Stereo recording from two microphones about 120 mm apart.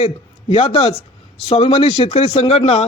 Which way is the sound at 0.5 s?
55° left (ahead or behind).